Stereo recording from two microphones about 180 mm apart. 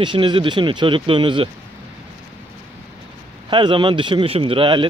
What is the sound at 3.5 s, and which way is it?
Speech, 25° right (ahead or behind).